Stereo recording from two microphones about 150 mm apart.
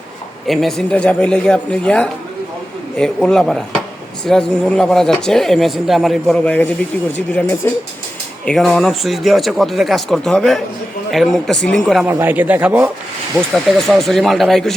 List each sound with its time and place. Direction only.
0.4 s speech: centre (ahead or behind); by 7.7 s 15° left (ahead or behind)
8.4 s speech: 5° left (ahead or behind)
12.0 s a man's voice: 10° right (ahead or behind)
13.5 s speech: centre (ahead or behind)